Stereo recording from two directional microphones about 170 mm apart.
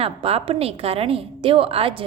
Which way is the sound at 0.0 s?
35° right (ahead or behind).